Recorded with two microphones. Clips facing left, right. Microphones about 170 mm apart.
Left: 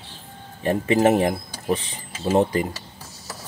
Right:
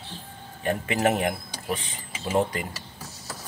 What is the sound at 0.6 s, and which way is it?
Speech, 30° left (ahead or behind).